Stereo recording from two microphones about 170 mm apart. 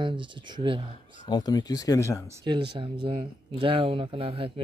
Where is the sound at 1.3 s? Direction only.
25° left (ahead or behind).